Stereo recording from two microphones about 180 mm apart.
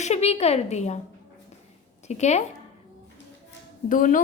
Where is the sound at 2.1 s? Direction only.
40° left (ahead or behind).